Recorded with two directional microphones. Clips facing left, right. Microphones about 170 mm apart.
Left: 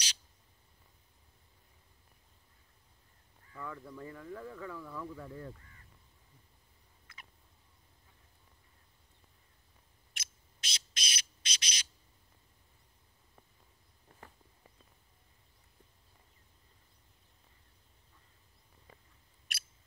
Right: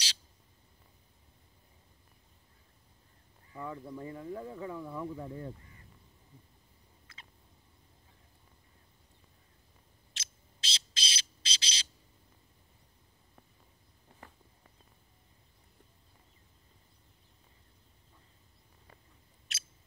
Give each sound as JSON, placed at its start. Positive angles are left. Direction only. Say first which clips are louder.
{"t": 3.5, "sound": "speech", "louder": "right 4 dB", "side_deg": -25}
{"t": 10.1, "sound": "bird", "louder": "left 1 dB", "side_deg": -30}